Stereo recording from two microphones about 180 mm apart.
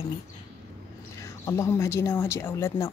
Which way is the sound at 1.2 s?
15° left (ahead or behind).